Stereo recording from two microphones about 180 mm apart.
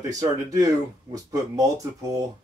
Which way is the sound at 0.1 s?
20° right (ahead or behind).